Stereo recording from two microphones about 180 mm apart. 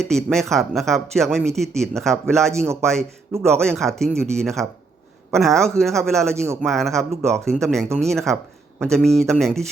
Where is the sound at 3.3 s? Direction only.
15° right (ahead or behind).